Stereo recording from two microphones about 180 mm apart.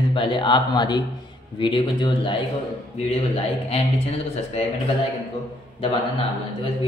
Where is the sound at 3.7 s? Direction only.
35° left (ahead or behind).